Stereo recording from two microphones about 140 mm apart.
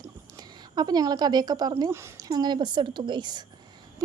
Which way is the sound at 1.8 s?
20° right (ahead or behind).